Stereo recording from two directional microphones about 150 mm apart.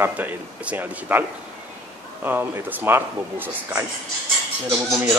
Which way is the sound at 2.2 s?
15° right (ahead or behind).